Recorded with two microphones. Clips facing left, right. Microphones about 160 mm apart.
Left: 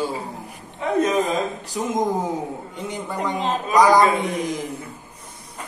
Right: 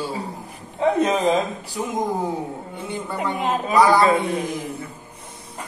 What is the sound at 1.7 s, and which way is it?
A man's voice, 20° left (ahead or behind).